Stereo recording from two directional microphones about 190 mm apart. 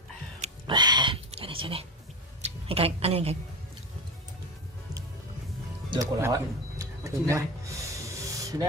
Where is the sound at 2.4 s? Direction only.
30° right (ahead or behind).